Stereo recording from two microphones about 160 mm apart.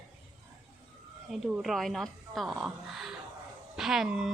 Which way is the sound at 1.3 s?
5° right (ahead or behind).